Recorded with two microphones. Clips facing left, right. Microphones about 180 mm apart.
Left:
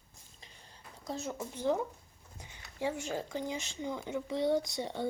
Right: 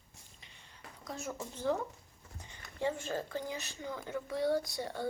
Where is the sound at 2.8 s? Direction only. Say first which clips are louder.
Even; 10° left (ahead or behind).